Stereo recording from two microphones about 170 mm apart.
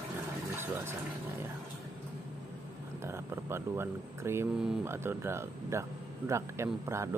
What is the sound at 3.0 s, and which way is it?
A man's voice, 15° right (ahead or behind).